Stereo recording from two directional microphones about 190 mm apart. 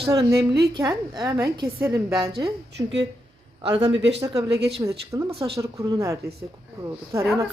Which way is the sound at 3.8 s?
70° right (ahead or behind).